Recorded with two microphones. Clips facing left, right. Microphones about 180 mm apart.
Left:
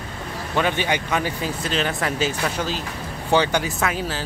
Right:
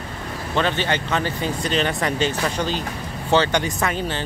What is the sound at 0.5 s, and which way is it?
Speech, 10° left (ahead or behind).